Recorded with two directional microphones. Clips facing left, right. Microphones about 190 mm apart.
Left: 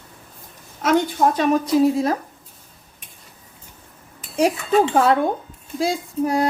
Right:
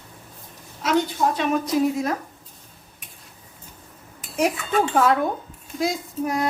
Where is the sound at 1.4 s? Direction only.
35° left (ahead or behind).